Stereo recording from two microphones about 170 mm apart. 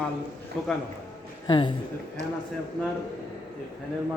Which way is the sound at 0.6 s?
5° left (ahead or behind).